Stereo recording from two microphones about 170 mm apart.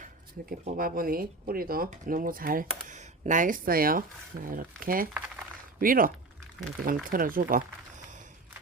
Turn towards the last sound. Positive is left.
turn(degrees=-55)  # may be behind; listen again after turning